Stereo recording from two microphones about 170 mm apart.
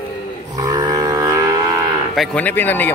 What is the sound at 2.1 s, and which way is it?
Cattle, centre (ahead or behind).